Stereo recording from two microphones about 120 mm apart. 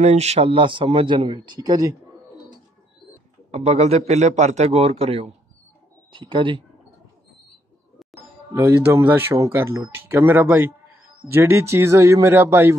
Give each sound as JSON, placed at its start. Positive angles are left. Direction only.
{"t": 0.0, "sound": "a man's voice", "side_deg": -65}
{"t": 3.5, "sound": "a man's voice", "side_deg": -60}
{"t": 6.1, "sound": "speech", "side_deg": -45}
{"t": 8.5, "sound": "speech", "side_deg": -25}